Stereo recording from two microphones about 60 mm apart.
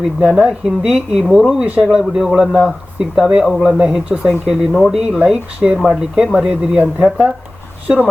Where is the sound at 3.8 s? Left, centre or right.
Centre.